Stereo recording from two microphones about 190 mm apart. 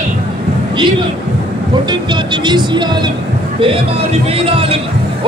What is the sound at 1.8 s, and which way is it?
Music, 25° right (ahead or behind).